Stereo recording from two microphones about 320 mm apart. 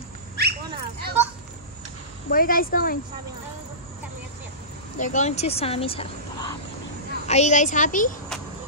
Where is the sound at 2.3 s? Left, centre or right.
Left.